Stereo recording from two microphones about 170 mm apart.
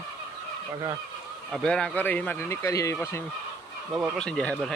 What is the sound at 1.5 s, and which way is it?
Speech, 5° left (ahead or behind).